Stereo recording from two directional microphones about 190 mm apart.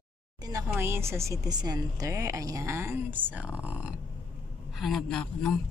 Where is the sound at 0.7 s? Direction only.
15° right (ahead or behind).